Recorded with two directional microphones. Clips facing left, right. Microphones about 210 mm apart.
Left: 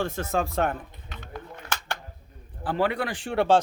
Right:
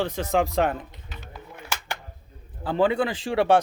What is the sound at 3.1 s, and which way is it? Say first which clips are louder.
Speech: right 1 dB; 90° right.